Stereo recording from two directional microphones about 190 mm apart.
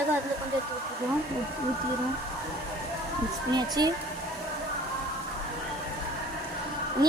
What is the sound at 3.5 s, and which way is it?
Speech, 20° right (ahead or behind).